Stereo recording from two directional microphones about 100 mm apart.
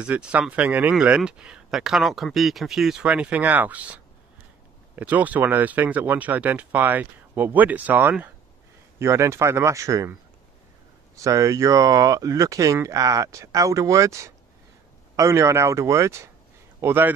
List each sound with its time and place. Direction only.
0.0 s speech: 10° right (ahead or behind)
9.0 s speech: 25° right (ahead or behind)
11.1 s speech: 35° right (ahead or behind)